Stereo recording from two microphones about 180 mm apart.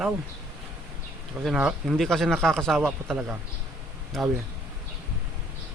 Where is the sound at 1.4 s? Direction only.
Centre (ahead or behind).